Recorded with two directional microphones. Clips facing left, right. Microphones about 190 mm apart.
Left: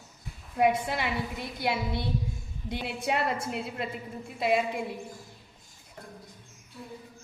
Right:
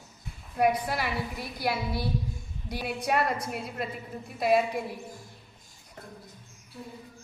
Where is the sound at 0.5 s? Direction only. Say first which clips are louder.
Even; 25° left (ahead or behind).